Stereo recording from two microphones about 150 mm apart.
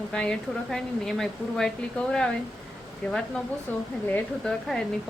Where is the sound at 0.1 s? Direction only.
5° left (ahead or behind).